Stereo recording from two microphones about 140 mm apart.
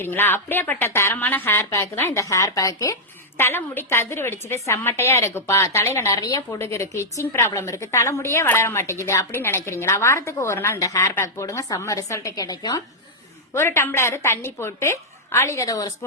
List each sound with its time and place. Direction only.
0.0 s a woman's voice: 15° left (ahead or behind)